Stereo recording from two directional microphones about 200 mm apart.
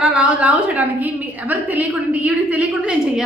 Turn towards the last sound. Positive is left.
turn(degrees=-5)  # may be behind; listen again after turning